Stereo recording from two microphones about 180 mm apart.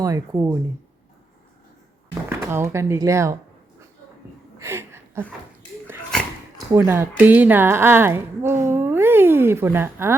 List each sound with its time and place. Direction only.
0.0 s a woman's voice: 20° right (ahead or behind)
2.4 s a woman's voice: 15° right (ahead or behind)
4.6 s a sound: 15° right (ahead or behind)
6.7 s a woman's voice: 15° right (ahead or behind)